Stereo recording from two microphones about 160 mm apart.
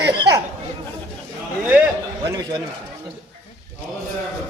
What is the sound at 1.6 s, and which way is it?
Speech, 10° right (ahead or behind).